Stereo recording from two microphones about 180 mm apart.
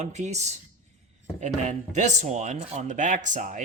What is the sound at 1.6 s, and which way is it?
Speech, 40° right (ahead or behind).